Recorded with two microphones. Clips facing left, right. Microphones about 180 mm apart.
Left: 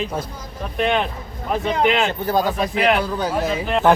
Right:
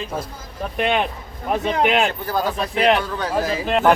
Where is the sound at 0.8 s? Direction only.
15° right (ahead or behind).